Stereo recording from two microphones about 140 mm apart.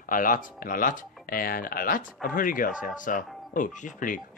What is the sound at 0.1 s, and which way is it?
Speech, 75° left (ahead or behind).